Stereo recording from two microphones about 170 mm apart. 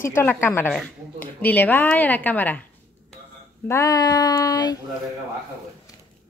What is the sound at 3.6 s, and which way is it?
Speech, 20° left (ahead or behind).